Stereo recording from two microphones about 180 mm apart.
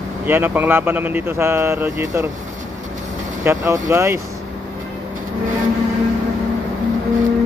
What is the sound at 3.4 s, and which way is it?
Speech, 15° right (ahead or behind).